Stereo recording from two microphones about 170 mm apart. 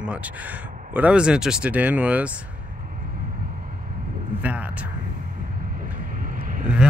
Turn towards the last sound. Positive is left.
turn(degrees=-55)  # may be behind; listen again after turning